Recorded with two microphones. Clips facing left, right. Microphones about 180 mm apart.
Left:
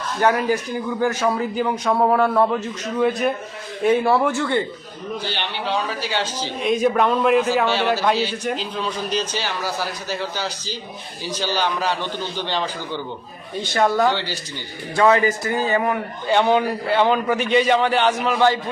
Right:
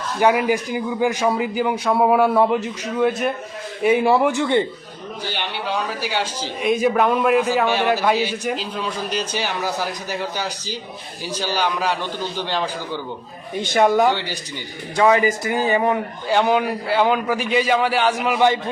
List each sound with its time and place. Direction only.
0.2 s a man's voice: 15° right (ahead or behind)
3.0 s a man's voice: centre (ahead or behind)
3.8 s a man's voice: 15° right (ahead or behind)
6.0 s a man's voice: 10° right (ahead or behind)
16.2 s a man's voice: 5° right (ahead or behind)